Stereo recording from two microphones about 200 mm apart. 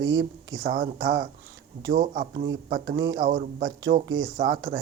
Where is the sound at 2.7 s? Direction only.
65° right (ahead or behind).